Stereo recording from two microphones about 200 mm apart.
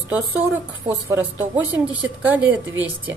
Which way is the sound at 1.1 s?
10° right (ahead or behind).